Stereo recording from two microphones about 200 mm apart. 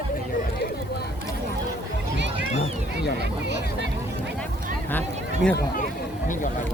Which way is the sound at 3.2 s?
60° right (ahead or behind).